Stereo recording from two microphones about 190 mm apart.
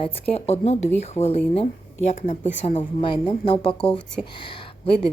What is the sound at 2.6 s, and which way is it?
A woman's voice, 25° left (ahead or behind).